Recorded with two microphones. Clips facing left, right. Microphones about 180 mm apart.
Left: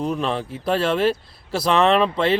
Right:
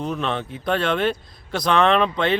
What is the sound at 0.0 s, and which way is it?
Speech, 5° left (ahead or behind).